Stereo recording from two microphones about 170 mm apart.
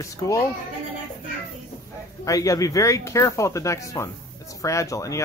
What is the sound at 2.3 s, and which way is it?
Speech, 20° left (ahead or behind).